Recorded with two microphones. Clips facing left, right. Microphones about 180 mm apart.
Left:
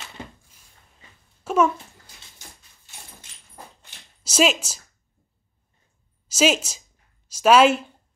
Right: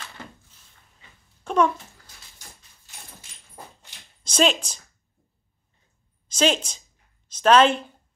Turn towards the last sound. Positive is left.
turn(degrees=10)  # may be behind; listen again after turning